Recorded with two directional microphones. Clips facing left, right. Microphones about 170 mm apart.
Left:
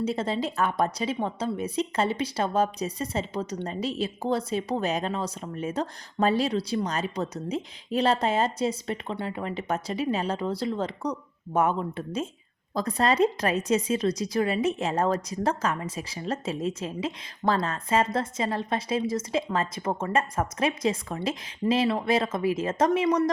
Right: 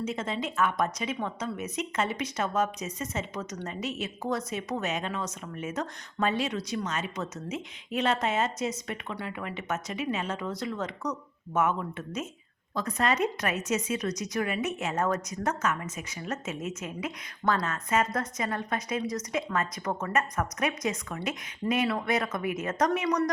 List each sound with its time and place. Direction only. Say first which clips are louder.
0.0 s a woman's voice: left 5 dB; 35° left (ahead or behind)